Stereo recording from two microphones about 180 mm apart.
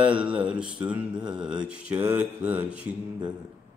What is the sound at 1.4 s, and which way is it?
Mantra, 5° right (ahead or behind).